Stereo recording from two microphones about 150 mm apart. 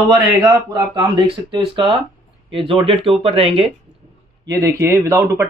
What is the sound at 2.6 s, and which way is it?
Speech, 35° right (ahead or behind).